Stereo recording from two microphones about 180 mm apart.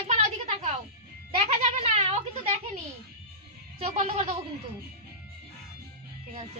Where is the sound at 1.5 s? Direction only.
35° right (ahead or behind).